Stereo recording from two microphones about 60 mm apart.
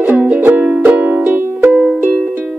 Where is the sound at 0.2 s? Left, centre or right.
Right.